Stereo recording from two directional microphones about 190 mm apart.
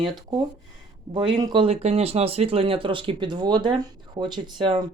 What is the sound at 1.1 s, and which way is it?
Speech, 20° right (ahead or behind).